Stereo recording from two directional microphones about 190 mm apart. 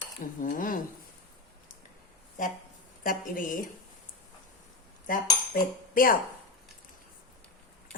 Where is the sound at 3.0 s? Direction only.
45° left (ahead or behind).